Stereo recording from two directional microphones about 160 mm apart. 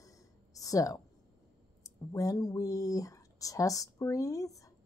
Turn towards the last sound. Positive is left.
turn(degrees=20)  # may be behind; listen again after turning